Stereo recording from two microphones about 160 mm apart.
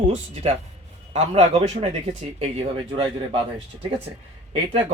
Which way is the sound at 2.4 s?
35° right (ahead or behind).